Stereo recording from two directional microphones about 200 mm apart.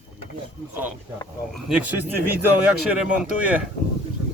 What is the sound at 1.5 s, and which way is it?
Speech, 5° right (ahead or behind).